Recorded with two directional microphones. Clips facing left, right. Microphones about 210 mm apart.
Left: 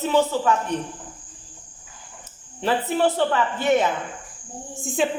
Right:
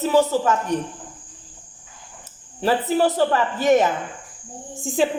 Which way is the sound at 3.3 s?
40° right (ahead or behind).